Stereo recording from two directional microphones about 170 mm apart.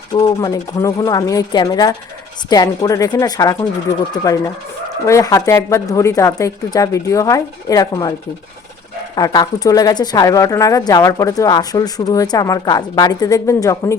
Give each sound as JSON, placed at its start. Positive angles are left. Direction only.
{"t": 0.1, "sound": "speech", "side_deg": 25}
{"t": 9.1, "sound": "speech", "side_deg": 25}